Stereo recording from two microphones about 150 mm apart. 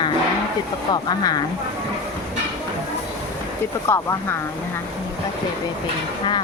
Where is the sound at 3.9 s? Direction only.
15° left (ahead or behind).